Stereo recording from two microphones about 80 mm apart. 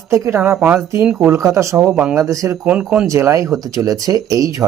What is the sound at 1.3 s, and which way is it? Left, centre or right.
Speech, right.